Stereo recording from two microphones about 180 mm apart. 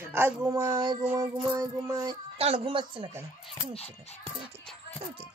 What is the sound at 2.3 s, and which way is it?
Speech, 30° right (ahead or behind).